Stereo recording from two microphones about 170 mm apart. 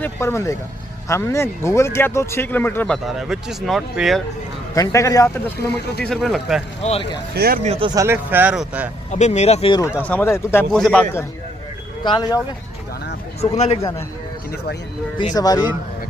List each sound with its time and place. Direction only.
0.0 s speech: 15° left (ahead or behind)
3.1 s speech: 5° right (ahead or behind)
4.7 s speech: 20° left (ahead or behind)
6.0 s speech: centre (ahead or behind)
6.8 s speech: 35° left (ahead or behind)
7.3 s speech: 65° right (ahead or behind)
7.6 s speech: 35° right (ahead or behind)
7.9 s speech: 15° right (ahead or behind)
9.1 s speech: 40° left (ahead or behind)
9.9 s speech: 10° left (ahead or behind)
12.0 s speech: 25° left (ahead or behind)
13.6 s speech: 35° left (ahead or behind)
15.3 s speech: 20° left (ahead or behind)